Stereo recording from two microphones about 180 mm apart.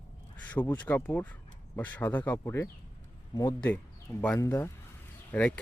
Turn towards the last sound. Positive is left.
turn(degrees=10)  # may be behind; listen again after turning